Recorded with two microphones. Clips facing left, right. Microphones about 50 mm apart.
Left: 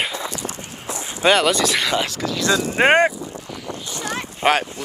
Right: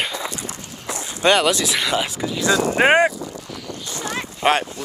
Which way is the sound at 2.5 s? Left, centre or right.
Right.